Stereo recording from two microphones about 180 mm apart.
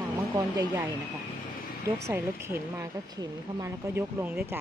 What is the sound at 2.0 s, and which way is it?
Speech, 15° right (ahead or behind).